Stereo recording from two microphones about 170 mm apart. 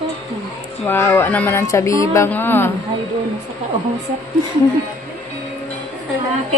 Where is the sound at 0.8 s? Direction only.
15° left (ahead or behind).